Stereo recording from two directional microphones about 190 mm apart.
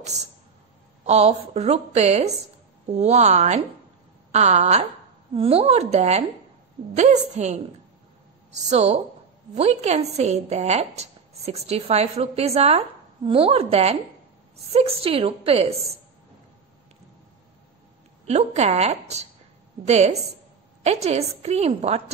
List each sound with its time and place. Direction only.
0.0 s a woman's voice: 35° right (ahead or behind)
18.2 s a woman's voice: 35° right (ahead or behind)